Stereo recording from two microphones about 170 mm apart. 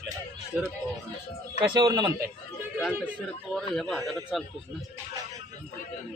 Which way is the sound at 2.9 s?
10° right (ahead or behind).